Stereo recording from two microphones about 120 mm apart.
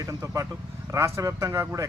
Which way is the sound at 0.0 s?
25° right (ahead or behind).